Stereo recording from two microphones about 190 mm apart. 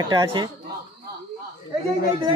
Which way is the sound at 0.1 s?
25° right (ahead or behind).